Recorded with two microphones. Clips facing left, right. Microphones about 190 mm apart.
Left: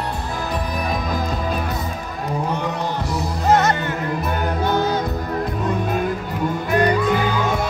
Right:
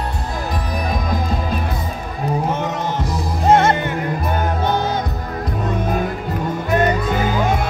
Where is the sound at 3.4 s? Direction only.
25° right (ahead or behind).